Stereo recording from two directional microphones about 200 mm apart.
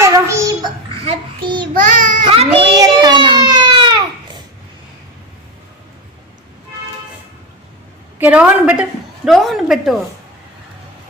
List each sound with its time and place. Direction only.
0.0 s a child's voice: 15° right (ahead or behind)
1.0 s child singing: 25° right (ahead or behind)
1.7 s child singing: 40° right (ahead or behind)
2.2 s a sound: 25° right (ahead or behind)
8.2 s a woman's voice: 5° right (ahead or behind)